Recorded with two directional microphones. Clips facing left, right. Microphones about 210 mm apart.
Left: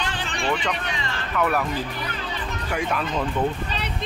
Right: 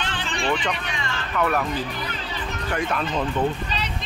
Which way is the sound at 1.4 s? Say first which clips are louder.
Even; 5° left (ahead or behind).